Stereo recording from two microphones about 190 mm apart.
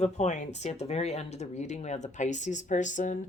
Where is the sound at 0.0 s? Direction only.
35° left (ahead or behind).